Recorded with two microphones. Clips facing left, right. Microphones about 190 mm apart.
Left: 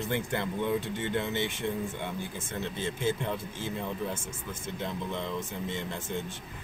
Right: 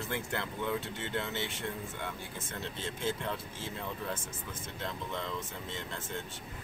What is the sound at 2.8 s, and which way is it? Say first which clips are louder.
Speech: left 5 dB; 10° left (ahead or behind).